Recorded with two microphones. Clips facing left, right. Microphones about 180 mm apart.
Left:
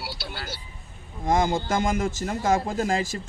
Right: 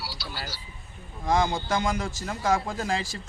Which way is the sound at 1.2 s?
20° left (ahead or behind).